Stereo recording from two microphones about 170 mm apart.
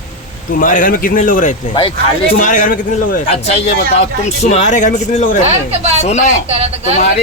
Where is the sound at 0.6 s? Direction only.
50° left (ahead or behind).